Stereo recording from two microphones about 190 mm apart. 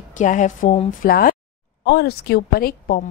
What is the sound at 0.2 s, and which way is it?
A woman's voice, 40° left (ahead or behind).